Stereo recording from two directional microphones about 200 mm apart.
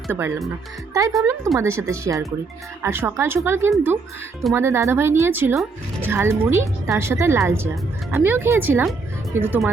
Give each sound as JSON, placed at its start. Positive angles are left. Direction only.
{"t": 0.1, "sound": "a woman's voice", "side_deg": -10}